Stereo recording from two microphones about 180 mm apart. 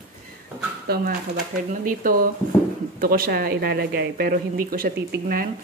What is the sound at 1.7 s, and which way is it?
Speech, 50° right (ahead or behind).